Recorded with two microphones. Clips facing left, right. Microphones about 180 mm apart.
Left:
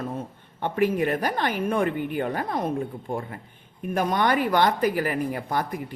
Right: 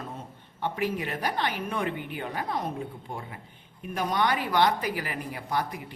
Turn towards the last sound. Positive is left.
turn(degrees=50)  # may be behind; listen again after turning